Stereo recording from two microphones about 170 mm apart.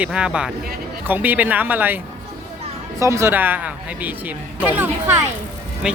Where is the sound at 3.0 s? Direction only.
15° right (ahead or behind).